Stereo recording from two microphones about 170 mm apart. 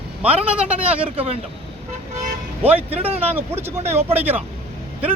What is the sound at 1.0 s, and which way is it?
Speech, 35° right (ahead or behind).